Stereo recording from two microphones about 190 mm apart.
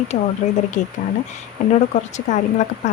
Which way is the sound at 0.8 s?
40° left (ahead or behind).